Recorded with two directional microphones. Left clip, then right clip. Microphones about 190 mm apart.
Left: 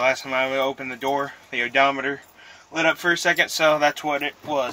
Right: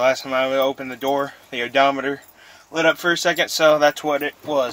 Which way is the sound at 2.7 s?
15° right (ahead or behind).